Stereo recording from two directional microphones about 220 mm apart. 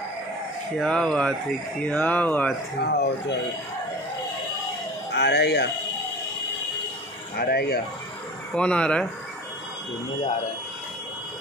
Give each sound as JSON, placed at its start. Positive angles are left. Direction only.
{"t": 0.7, "sound": "speech", "side_deg": 0}
{"t": 2.8, "sound": "speech", "side_deg": 50}
{"t": 5.1, "sound": "speech", "side_deg": 50}
{"t": 7.3, "sound": "speech", "side_deg": 45}
{"t": 8.5, "sound": "speech", "side_deg": 5}